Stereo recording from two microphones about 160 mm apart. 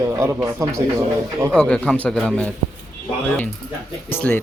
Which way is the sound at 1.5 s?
5° left (ahead or behind).